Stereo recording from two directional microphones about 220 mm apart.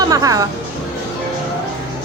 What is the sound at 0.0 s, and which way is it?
Speech, 15° right (ahead or behind).